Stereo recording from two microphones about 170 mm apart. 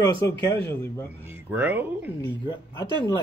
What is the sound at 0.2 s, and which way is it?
Speech, 20° left (ahead or behind).